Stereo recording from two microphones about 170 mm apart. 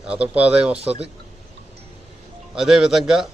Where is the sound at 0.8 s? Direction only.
35° right (ahead or behind).